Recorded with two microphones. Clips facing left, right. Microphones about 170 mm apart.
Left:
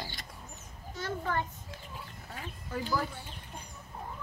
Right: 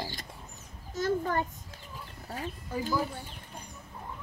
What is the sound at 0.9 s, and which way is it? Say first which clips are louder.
Speech: right 5 dB; 45° right (ahead or behind).